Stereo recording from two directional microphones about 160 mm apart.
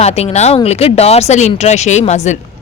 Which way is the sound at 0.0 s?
40° left (ahead or behind).